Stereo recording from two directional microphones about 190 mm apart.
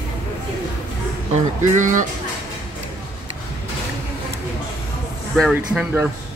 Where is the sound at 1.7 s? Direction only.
40° right (ahead or behind).